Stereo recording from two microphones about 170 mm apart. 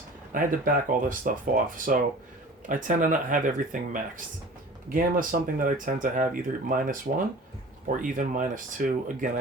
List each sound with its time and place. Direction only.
0.3 s speech: 55° right (ahead or behind)